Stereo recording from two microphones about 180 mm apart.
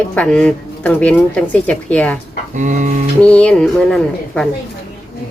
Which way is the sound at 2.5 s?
45° right (ahead or behind).